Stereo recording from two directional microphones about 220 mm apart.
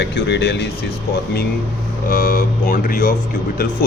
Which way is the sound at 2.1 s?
40° left (ahead or behind).